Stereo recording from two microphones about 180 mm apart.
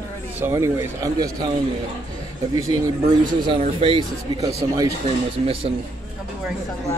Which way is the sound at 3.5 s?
30° right (ahead or behind).